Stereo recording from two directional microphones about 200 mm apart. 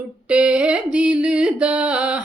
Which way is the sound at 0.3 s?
5° right (ahead or behind).